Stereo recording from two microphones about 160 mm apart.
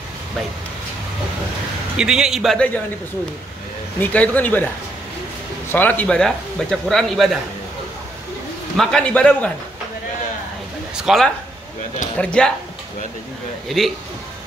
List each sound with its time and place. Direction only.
2.0 s speech: 5° right (ahead or behind)
4.0 s a man's voice: 10° left (ahead or behind)
5.7 s speech: 10° left (ahead or behind)
8.7 s a man's voice: 5° left (ahead or behind)
11.0 s speech: centre (ahead or behind)
13.7 s speech: centre (ahead or behind)